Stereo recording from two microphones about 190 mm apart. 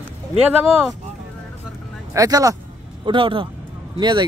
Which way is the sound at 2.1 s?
20° right (ahead or behind).